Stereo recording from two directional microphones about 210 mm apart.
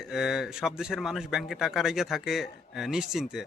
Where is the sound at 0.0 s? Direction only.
Centre (ahead or behind).